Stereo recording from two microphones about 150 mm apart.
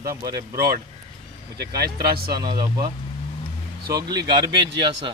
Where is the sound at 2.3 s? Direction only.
25° right (ahead or behind).